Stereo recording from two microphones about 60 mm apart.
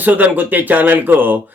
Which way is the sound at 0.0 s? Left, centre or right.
Right.